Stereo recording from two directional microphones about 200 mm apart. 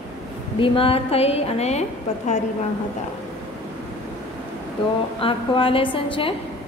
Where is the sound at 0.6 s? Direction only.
25° left (ahead or behind).